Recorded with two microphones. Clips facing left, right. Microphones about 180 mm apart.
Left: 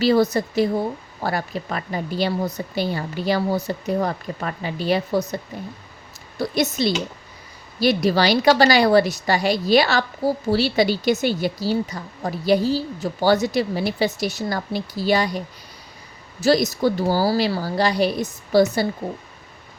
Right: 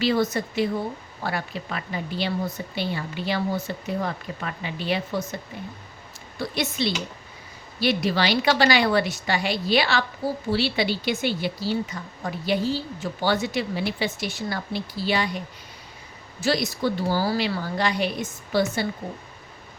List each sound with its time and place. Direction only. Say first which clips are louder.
0.0 s a woman's voice: left 5 dB; 40° left (ahead or behind)
6.4 s a woman's voice: left 5 dB; 40° left (ahead or behind)
16.4 s a woman's voice: left 6 dB; 40° left (ahead or behind)